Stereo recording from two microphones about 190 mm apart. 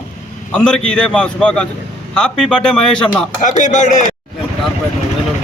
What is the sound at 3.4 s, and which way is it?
Speech, 40° left (ahead or behind).